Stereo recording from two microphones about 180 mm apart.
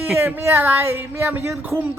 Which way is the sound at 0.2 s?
15° right (ahead or behind).